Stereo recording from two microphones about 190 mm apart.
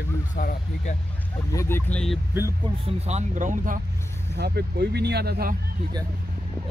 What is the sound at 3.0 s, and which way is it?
Speech, 40° right (ahead or behind).